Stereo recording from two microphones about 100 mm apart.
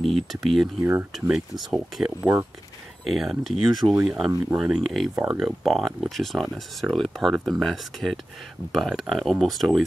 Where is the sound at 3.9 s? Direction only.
20° right (ahead or behind).